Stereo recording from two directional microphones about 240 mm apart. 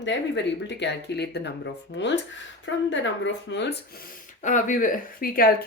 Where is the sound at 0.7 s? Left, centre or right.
Left.